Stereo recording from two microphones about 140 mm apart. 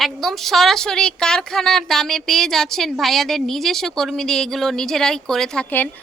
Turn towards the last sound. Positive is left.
turn(degrees=10)  # may be behind; listen again after turning